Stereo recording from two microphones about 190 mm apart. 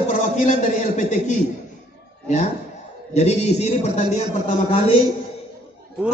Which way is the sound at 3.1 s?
35° left (ahead or behind).